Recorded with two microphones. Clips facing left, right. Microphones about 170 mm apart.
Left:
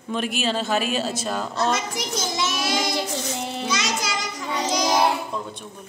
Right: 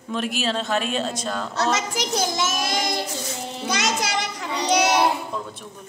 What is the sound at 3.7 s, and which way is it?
A child's voice, 55° right (ahead or behind).